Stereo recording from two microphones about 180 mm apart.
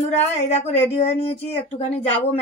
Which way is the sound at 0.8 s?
30° left (ahead or behind).